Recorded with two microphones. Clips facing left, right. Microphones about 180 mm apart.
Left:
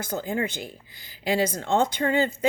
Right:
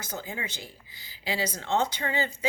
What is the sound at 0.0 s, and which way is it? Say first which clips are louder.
Speech: left 9 dB; 55° left (ahead or behind).